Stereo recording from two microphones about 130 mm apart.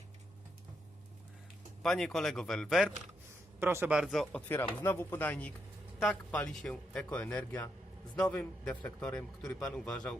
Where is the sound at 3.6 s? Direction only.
15° right (ahead or behind).